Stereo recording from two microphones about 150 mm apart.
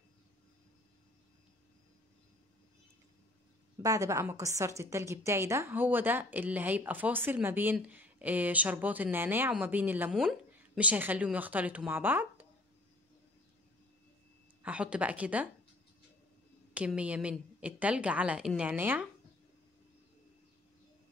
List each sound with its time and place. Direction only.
3.8 s a woman's voice: 20° right (ahead or behind)
14.6 s a woman's voice: 10° right (ahead or behind)
16.7 s a woman's voice: 10° right (ahead or behind)